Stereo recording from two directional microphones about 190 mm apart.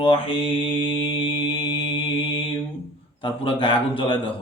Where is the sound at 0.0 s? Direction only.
30° left (ahead or behind).